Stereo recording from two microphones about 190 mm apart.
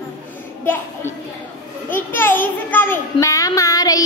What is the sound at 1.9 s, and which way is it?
A child's voice, 10° left (ahead or behind).